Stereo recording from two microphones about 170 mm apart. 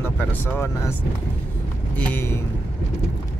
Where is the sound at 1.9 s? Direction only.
10° left (ahead or behind).